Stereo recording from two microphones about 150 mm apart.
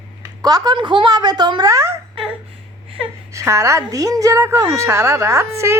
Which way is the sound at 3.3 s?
20° right (ahead or behind).